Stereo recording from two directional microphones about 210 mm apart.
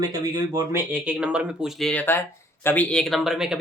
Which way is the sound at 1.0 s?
5° right (ahead or behind).